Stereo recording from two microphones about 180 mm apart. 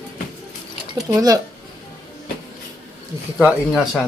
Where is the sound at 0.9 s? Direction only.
20° right (ahead or behind).